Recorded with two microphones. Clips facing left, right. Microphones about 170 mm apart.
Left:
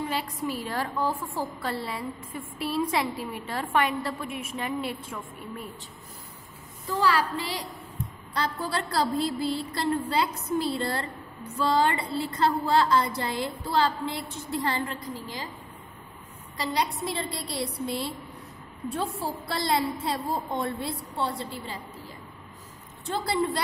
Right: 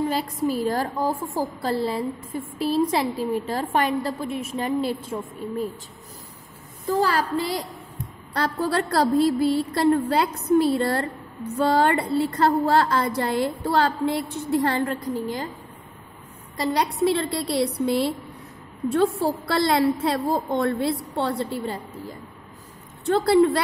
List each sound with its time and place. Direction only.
0.1 s a woman's voice: 40° right (ahead or behind)
6.9 s a woman's voice: 45° right (ahead or behind)
8.3 s a woman's voice: 60° right (ahead or behind)
16.5 s a woman's voice: 55° right (ahead or behind)
23.0 s a woman's voice: 65° right (ahead or behind)